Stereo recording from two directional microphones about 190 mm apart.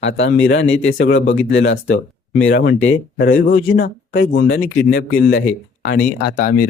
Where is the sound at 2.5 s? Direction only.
55° left (ahead or behind).